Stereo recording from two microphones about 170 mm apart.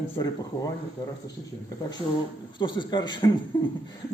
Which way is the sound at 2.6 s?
25° left (ahead or behind).